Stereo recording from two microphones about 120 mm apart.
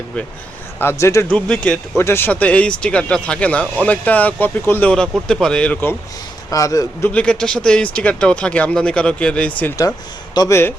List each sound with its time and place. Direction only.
0.8 s a man's voice: 20° left (ahead or behind)
1.3 s speech: 10° left (ahead or behind)
2.0 s speech: 20° left (ahead or behind)
6.5 s a man's voice: 25° left (ahead or behind)
7.1 s speech: 10° left (ahead or behind)
10.3 s speech: 30° left (ahead or behind)